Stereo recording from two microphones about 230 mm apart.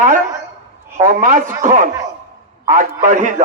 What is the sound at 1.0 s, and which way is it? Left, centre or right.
Speech, right.